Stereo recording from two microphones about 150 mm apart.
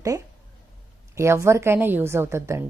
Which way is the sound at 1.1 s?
20° right (ahead or behind).